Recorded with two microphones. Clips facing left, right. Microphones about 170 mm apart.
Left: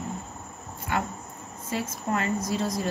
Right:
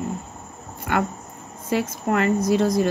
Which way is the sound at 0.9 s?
70° right (ahead or behind).